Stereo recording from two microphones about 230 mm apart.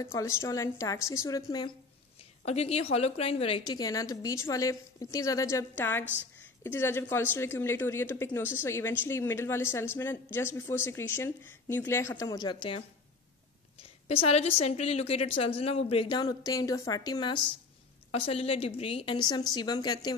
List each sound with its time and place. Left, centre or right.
0.0 s a woman's voice: centre
2.4 s a woman's voice: left
14.0 s a woman's voice: left